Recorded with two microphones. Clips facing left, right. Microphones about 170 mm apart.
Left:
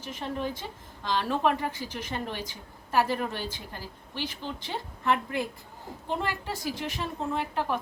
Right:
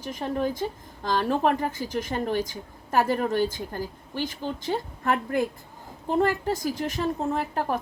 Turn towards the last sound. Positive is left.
turn(degrees=-45)  # may be behind; listen again after turning